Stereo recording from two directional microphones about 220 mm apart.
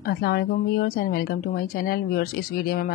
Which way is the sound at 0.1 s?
45° left (ahead or behind).